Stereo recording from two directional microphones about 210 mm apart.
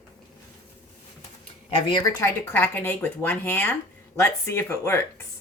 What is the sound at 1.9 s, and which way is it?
Speech, 20° left (ahead or behind).